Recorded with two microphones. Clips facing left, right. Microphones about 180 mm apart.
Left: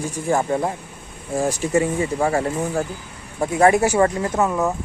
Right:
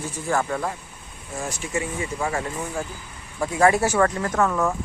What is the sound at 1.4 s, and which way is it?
Speech, 35° left (ahead or behind).